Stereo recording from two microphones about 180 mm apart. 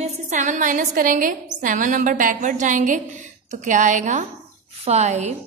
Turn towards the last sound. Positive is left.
turn(degrees=-40)  # may be behind; listen again after turning